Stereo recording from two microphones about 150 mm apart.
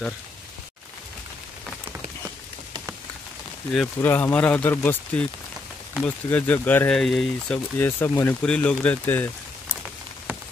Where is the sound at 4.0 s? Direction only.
10° left (ahead or behind).